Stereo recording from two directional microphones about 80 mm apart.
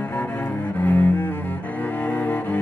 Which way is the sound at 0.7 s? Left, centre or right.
Left.